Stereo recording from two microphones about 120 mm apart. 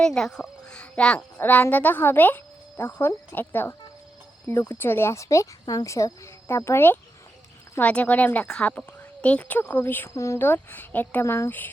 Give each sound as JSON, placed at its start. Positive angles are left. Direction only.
{"t": 0.0, "sound": "a child's voice", "side_deg": 5}